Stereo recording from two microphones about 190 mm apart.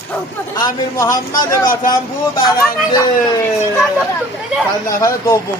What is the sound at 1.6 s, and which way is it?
Speech, 45° left (ahead or behind).